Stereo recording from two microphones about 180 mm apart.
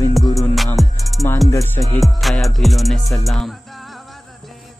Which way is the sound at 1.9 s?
Centre (ahead or behind).